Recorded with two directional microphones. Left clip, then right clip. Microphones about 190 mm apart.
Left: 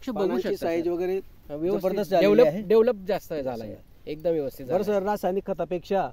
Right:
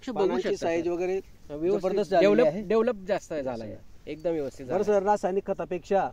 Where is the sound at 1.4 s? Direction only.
55° left (ahead or behind).